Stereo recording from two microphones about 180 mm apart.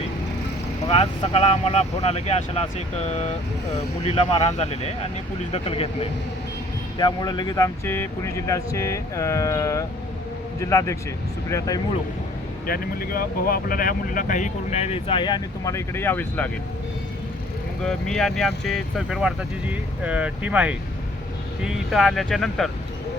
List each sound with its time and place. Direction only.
0.9 s speech: 35° left (ahead or behind); by 11.8 s 15° left (ahead or behind)
12.6 s speech: 55° left (ahead or behind); by 16.5 s 10° left (ahead or behind)
17.8 s speech: 5° left (ahead or behind)